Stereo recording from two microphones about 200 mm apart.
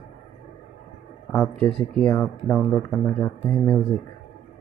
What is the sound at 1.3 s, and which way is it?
Speech, 10° left (ahead or behind).